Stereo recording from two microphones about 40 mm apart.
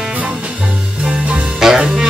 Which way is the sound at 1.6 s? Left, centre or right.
Centre.